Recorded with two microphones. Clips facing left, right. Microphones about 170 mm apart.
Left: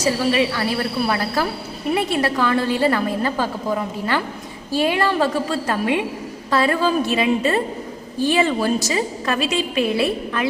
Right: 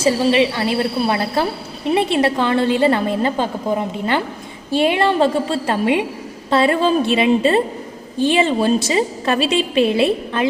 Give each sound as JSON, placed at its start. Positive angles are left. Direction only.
{"t": 0.0, "sound": "a woman's voice", "side_deg": -25}